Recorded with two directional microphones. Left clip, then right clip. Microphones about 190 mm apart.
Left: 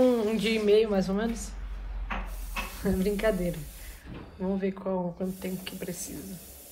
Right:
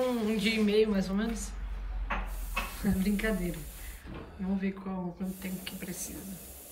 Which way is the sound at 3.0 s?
5° left (ahead or behind).